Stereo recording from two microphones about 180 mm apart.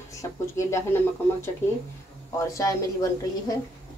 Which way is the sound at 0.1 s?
15° left (ahead or behind).